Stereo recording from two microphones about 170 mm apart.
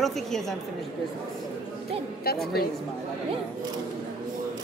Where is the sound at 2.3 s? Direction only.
65° left (ahead or behind).